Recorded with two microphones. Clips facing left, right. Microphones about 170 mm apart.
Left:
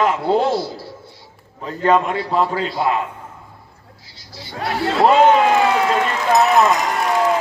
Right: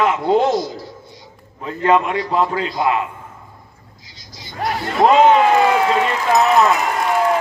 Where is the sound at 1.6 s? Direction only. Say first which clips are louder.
Even; 40° left (ahead or behind).